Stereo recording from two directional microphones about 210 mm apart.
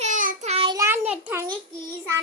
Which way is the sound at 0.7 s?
10° right (ahead or behind).